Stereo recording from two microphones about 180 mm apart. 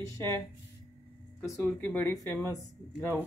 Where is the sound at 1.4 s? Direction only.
15° left (ahead or behind).